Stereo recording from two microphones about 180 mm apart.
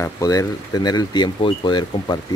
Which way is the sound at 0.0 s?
20° left (ahead or behind).